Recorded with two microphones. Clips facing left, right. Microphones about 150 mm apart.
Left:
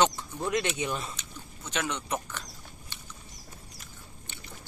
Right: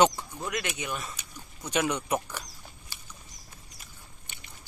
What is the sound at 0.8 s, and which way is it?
Speech, 30° left (ahead or behind).